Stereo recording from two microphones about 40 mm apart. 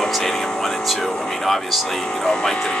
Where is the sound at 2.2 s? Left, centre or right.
Centre.